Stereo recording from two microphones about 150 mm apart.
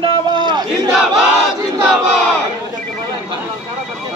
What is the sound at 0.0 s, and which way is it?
Battle cry, 30° right (ahead or behind).